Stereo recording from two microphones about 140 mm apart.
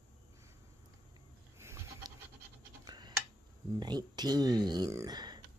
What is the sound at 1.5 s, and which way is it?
Goat, 20° right (ahead or behind).